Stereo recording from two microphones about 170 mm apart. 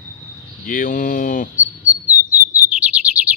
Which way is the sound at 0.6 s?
50° left (ahead or behind).